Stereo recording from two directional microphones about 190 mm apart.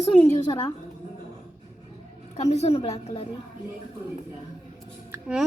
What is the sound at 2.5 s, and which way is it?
Speech, 35° left (ahead or behind).